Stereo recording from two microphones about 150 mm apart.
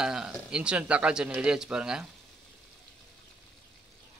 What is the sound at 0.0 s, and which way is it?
Speech, 5° right (ahead or behind).